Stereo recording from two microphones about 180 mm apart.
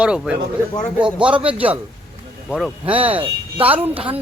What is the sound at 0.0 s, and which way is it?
Speech, 5° right (ahead or behind).